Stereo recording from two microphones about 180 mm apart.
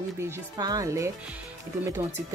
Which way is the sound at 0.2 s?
20° right (ahead or behind).